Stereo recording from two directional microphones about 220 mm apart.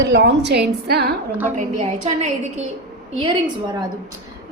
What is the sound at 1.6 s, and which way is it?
A woman's voice, 30° right (ahead or behind).